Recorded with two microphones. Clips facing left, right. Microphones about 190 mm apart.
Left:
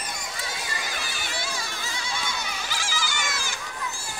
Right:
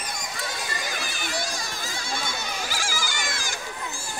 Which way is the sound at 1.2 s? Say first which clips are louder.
Right 3 dB; 45° right (ahead or behind).